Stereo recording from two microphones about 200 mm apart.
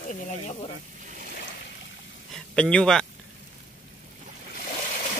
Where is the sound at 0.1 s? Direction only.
30° left (ahead or behind).